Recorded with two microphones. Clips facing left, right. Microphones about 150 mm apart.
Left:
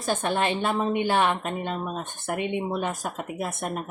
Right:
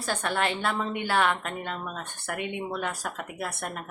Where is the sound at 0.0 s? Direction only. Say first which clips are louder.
Left 3 dB; 20° left (ahead or behind).